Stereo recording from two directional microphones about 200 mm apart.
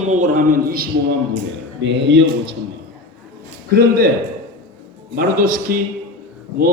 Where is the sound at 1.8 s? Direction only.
65° right (ahead or behind).